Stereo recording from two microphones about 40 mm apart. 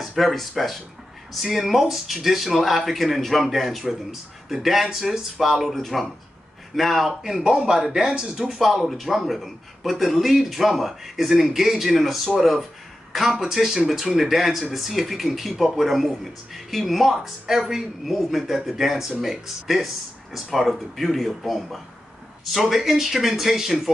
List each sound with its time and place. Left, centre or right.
0.0 s speech: centre
7.2 s speech: centre